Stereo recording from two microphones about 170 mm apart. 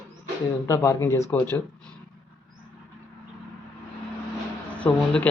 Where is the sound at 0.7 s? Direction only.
15° left (ahead or behind).